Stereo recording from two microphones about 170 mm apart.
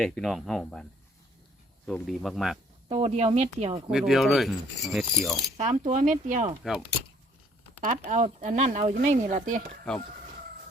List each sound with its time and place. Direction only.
0.0 s speech: centre (ahead or behind)
1.9 s speech: centre (ahead or behind)
2.9 s speech: 35° right (ahead or behind)
3.9 s speech: centre (ahead or behind)
5.5 s speech: 40° right (ahead or behind)
7.8 s speech: 45° right (ahead or behind)